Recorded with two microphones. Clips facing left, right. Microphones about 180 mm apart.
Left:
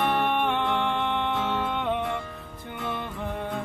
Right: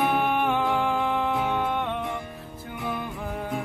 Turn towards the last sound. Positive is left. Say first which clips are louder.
# right 1 dB
turn(degrees=-5)  # may be behind; listen again after turning